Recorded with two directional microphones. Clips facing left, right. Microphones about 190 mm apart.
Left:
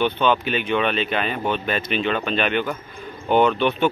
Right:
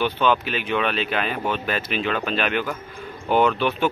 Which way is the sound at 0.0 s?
5° right (ahead or behind).